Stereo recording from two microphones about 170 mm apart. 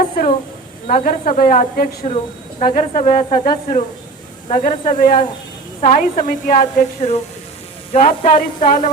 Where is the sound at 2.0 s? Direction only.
40° left (ahead or behind).